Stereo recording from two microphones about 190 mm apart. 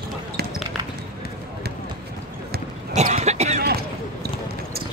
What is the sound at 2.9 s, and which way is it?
Cough, 35° right (ahead or behind).